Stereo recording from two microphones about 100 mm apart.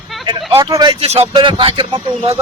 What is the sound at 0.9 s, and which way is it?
Speech, 80° right.